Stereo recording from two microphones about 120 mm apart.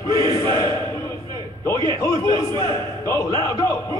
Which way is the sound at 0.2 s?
25° left (ahead or behind).